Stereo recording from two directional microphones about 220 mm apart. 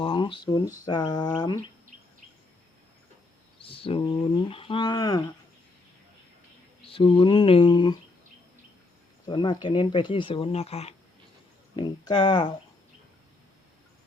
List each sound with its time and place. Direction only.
0.0 s speech: 25° left (ahead or behind)
3.6 s speech: 25° left (ahead or behind)
6.8 s speech: 25° left (ahead or behind)
9.2 s speech: 20° left (ahead or behind)